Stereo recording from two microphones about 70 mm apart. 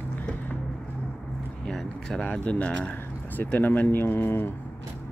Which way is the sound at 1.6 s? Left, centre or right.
Centre.